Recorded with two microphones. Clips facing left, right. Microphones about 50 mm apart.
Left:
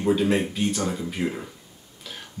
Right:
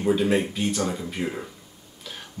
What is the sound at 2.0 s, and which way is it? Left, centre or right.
Throat clearing, centre.